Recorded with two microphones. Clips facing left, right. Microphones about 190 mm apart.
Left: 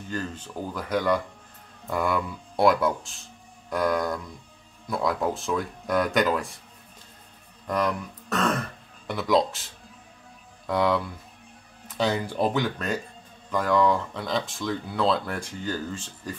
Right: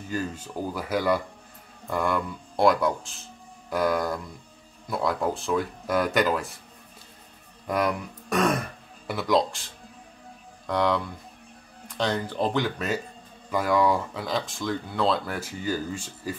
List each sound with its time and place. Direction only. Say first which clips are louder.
0.1 s speech: right 2 dB; 10° right (ahead or behind)
7.6 s speech: even; 10° right (ahead or behind)
9.1 s speech: left 1 dB; centre (ahead or behind)
10.7 s speech: left 1 dB; centre (ahead or behind)
12.0 s speech: left 2 dB; 10° left (ahead or behind); by 16.3 s 10° right (ahead or behind)